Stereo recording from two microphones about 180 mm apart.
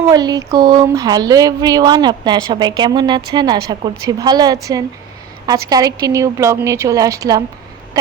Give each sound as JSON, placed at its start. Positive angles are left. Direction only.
{"t": 0.1, "sound": "speech", "side_deg": -20}